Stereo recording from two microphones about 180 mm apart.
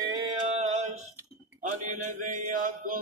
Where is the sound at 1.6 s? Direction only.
45° right (ahead or behind).